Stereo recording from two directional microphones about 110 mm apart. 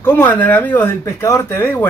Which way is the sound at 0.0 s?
20° left (ahead or behind).